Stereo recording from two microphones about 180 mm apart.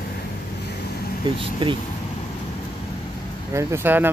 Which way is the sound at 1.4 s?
25° right (ahead or behind).